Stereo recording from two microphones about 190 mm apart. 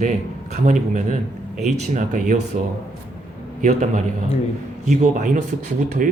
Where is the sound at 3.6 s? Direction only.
35° right (ahead or behind).